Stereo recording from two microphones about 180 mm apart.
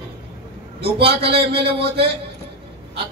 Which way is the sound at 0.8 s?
30° right (ahead or behind).